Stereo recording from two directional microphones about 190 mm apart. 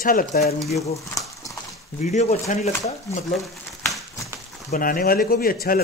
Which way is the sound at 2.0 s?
35° left (ahead or behind).